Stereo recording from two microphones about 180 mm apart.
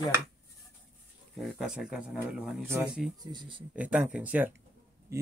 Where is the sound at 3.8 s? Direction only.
5° right (ahead or behind).